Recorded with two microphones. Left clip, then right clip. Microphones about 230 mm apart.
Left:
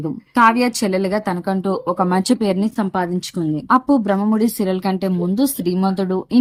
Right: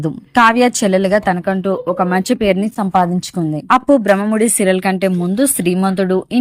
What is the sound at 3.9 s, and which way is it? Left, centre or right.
A woman's voice, centre.